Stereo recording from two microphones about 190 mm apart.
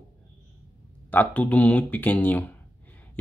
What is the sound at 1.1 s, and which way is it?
Speech, 10° left (ahead or behind).